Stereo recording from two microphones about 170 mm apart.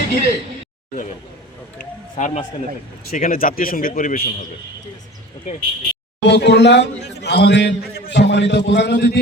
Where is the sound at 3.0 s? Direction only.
55° left (ahead or behind).